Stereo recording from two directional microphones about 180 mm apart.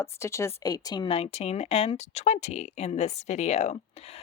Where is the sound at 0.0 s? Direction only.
15° left (ahead or behind).